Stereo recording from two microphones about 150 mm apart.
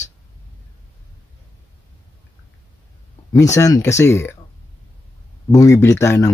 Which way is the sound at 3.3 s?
20° left (ahead or behind).